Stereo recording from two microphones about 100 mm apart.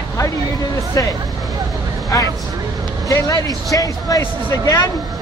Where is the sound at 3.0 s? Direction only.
35° left (ahead or behind).